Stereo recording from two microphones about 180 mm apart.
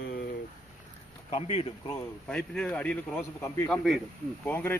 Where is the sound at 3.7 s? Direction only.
Centre (ahead or behind).